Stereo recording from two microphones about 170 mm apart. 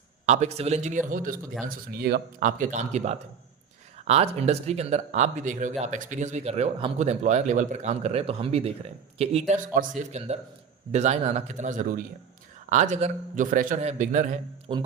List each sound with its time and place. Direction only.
0.3 s a man's voice: 40° right (ahead or behind)
9.7 s a man's voice: 50° right (ahead or behind)
14.7 s speech: 30° right (ahead or behind)